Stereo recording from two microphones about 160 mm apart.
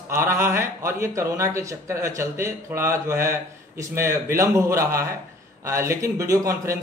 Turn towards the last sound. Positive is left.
turn(degrees=-20)  # may be behind; listen again after turning